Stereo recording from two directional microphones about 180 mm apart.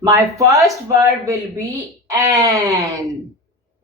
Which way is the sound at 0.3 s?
15° right (ahead or behind).